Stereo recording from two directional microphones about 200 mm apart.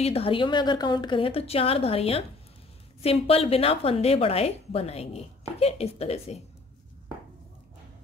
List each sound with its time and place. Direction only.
0.0 s a woman's voice: 30° left (ahead or behind)